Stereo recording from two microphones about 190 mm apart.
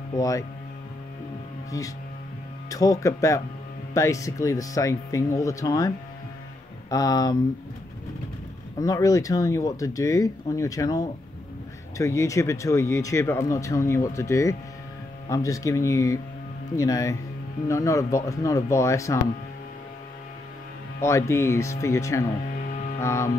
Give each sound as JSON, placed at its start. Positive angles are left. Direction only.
{"t": 0.1, "sound": "speech", "side_deg": 20}
{"t": 2.7, "sound": "speech", "side_deg": 15}
{"t": 8.7, "sound": "speech", "side_deg": 20}
{"t": 21.0, "sound": "speech", "side_deg": 15}
{"t": 22.9, "sound": "music", "side_deg": 15}